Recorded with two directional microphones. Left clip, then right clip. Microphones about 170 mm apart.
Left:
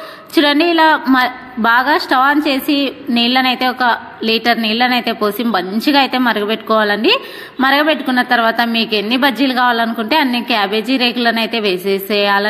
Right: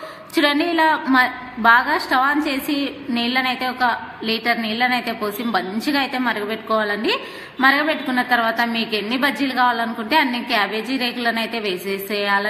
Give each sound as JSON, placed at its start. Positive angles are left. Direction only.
{"t": 0.3, "sound": "a woman's voice", "side_deg": 35}